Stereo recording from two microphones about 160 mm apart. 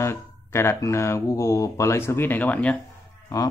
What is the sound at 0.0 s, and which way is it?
A man's voice, 15° left (ahead or behind).